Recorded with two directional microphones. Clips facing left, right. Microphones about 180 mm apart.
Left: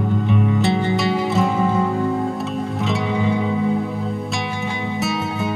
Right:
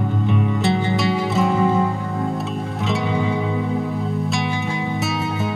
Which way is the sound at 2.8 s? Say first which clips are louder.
Right 1 dB; centre (ahead or behind).